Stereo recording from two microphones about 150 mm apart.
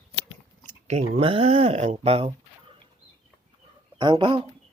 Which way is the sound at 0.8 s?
45° right (ahead or behind).